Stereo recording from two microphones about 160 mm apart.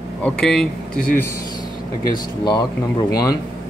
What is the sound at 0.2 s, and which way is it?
Speech, 5° left (ahead or behind).